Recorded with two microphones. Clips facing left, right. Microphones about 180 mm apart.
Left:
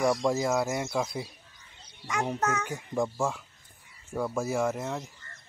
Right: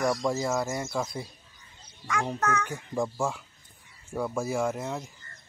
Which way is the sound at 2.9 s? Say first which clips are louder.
Left 1 dB; centre (ahead or behind).